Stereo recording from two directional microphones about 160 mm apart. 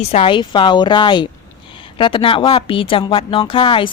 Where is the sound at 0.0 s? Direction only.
35° left (ahead or behind).